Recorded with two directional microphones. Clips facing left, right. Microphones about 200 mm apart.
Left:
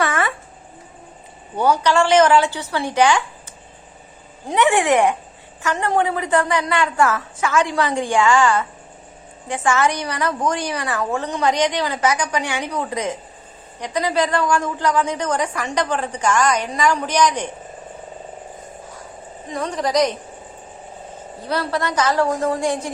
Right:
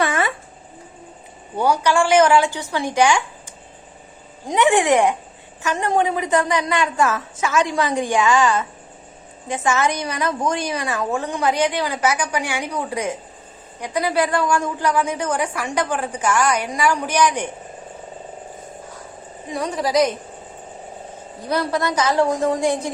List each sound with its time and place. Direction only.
0.0 s a sound: 25° right (ahead or behind)
1.5 s a woman's voice: 10° right (ahead or behind)
4.4 s a woman's voice: 15° right (ahead or behind)
19.5 s a woman's voice: 10° right (ahead or behind)
21.4 s a woman's voice: 15° right (ahead or behind)